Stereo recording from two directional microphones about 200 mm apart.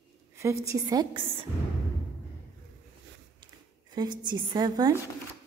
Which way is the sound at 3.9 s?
20° right (ahead or behind).